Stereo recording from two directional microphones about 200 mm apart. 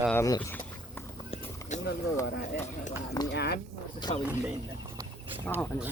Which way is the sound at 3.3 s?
55° left (ahead or behind).